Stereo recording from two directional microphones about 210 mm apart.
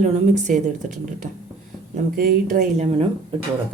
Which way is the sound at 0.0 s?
35° right (ahead or behind).